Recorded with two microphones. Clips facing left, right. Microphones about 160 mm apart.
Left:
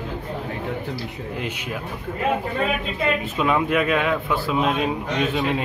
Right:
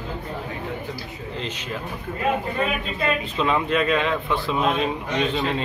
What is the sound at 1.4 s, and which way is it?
Speech, 10° left (ahead or behind).